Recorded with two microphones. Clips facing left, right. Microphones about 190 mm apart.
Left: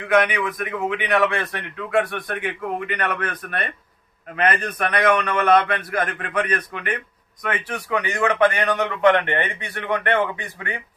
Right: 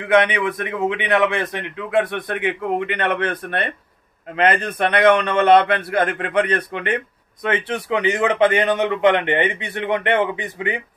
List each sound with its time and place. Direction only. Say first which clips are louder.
0.1 s a man's voice: right 3 dB; 25° right (ahead or behind)